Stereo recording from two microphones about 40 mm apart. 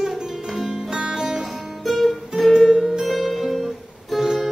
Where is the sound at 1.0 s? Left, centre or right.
Centre.